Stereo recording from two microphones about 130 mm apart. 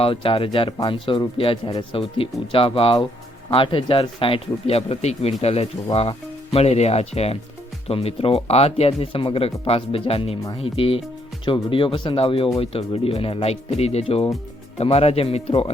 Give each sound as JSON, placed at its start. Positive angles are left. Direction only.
{"t": 0.0, "sound": "speech", "side_deg": 45}